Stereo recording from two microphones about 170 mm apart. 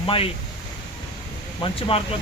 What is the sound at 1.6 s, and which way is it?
Speech, 30° left (ahead or behind).